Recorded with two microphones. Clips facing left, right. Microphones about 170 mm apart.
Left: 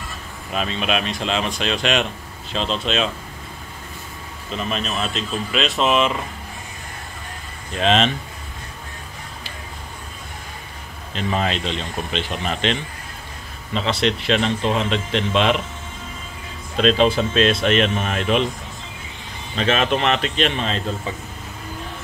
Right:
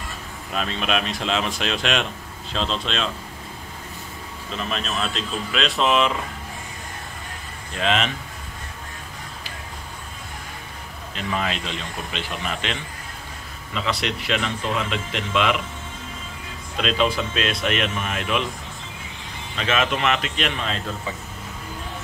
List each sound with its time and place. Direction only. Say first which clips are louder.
0.6 s speech: left 2 dB; centre (ahead or behind)
4.5 s speech: left 3 dB; centre (ahead or behind)
7.7 s speech: left 5 dB; 25° left (ahead or behind)
11.1 s speech: left 4 dB; 25° left (ahead or behind)
13.7 s speech: left 5 dB; 25° left (ahead or behind)
16.7 s speech: left 6 dB; 35° left (ahead or behind)
19.5 s speech: left 4 dB; 30° left (ahead or behind)